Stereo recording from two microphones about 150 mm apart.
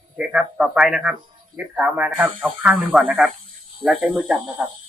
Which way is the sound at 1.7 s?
10° right (ahead or behind).